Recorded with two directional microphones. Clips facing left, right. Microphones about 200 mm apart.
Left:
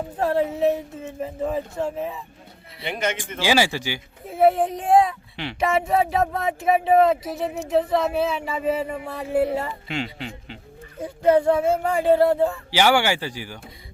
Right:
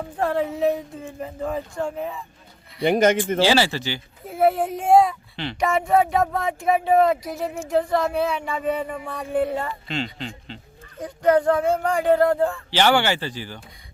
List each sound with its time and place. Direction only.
0.2 s speech: 5° left (ahead or behind)
2.8 s speech: 45° right (ahead or behind)
3.4 s speech: 10° left (ahead or behind)
4.3 s speech: centre (ahead or behind)